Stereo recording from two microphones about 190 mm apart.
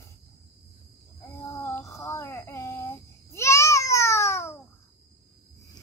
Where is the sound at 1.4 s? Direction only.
15° left (ahead or behind).